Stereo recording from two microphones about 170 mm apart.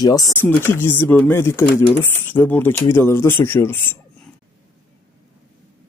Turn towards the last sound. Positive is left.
turn(degrees=15)  # may be behind; listen again after turning